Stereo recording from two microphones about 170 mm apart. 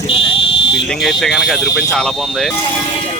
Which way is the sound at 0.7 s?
Centre (ahead or behind).